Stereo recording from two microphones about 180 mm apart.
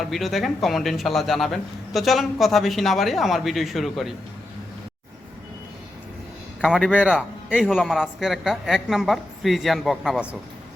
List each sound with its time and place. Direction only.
0.0 s speech: centre (ahead or behind)
6.6 s speech: centre (ahead or behind)